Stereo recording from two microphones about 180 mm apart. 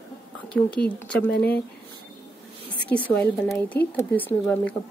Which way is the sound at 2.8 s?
10° left (ahead or behind).